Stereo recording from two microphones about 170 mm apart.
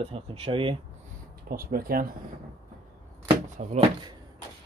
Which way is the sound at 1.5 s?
60° right (ahead or behind).